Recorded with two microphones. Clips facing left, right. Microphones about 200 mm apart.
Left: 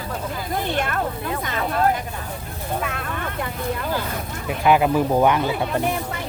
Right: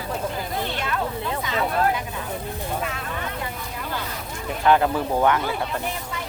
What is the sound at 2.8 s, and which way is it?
Vehicle, 55° left (ahead or behind).